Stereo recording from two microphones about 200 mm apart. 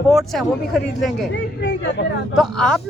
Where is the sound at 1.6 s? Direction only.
60° left (ahead or behind).